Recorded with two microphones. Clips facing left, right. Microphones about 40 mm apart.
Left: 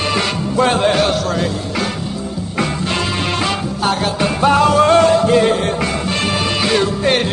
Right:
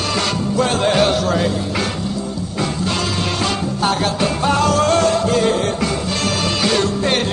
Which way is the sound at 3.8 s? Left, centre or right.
Centre.